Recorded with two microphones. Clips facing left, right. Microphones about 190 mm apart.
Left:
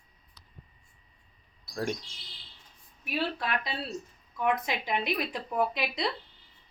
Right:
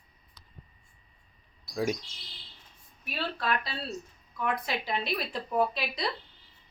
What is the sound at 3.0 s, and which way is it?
A woman's voice, 15° left (ahead or behind).